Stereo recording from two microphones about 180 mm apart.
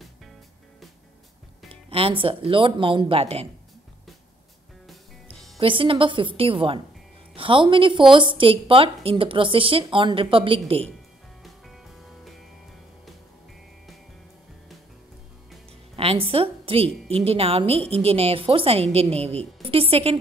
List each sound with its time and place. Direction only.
1.7 s a woman's voice: 30° right (ahead or behind)
5.3 s a woman's voice: 30° right (ahead or behind)
16.0 s a woman's voice: 30° right (ahead or behind)